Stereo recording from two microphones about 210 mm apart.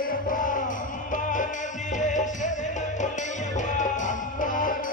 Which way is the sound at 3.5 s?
35° left (ahead or behind).